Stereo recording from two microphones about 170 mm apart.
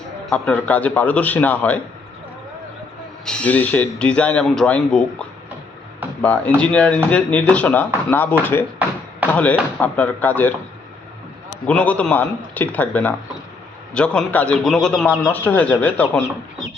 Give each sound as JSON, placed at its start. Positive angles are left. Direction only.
{"t": 0.3, "sound": "speech", "side_deg": 5}
{"t": 3.2, "sound": "speech", "side_deg": 10}
{"t": 6.2, "sound": "speech", "side_deg": 5}
{"t": 11.6, "sound": "speech", "side_deg": 10}